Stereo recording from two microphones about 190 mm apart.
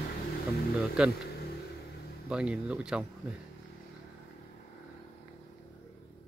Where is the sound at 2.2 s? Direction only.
5° right (ahead or behind).